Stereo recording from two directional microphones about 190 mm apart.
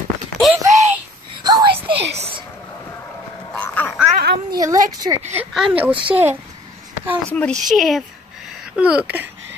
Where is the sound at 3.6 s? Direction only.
10° left (ahead or behind).